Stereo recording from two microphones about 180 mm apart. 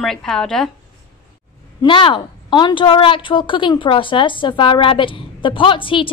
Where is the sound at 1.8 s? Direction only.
30° left (ahead or behind).